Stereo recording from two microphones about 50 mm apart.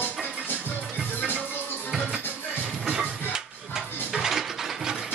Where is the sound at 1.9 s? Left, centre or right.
Centre.